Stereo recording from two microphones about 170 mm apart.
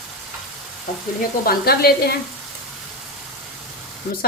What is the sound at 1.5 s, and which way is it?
Speech, 65° left (ahead or behind).